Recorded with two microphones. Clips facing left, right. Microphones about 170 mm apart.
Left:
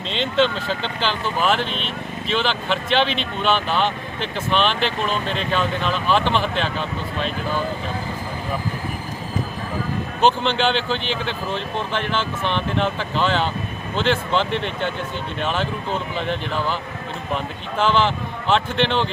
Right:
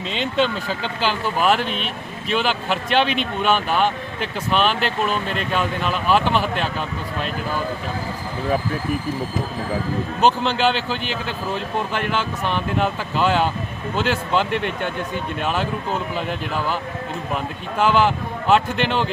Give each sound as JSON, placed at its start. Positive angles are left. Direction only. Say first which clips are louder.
{"t": 0.1, "sound": "speech", "louder": "left 2 dB", "side_deg": -10}
{"t": 10.2, "sound": "speech", "louder": "even", "side_deg": -5}